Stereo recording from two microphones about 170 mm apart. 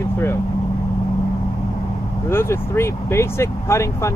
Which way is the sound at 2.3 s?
15° left (ahead or behind).